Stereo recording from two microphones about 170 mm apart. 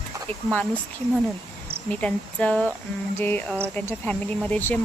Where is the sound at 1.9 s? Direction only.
5° left (ahead or behind).